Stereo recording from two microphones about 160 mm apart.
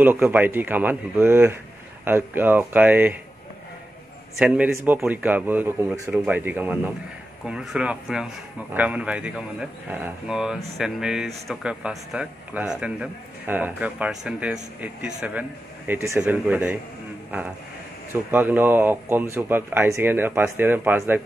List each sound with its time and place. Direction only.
0.0 s speech: 10° right (ahead or behind)
4.4 s speech: 10° right (ahead or behind)
15.9 s speech: 15° right (ahead or behind)
18.3 s speech: 10° right (ahead or behind)